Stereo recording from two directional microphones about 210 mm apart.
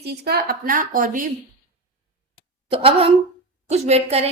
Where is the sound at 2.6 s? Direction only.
25° right (ahead or behind).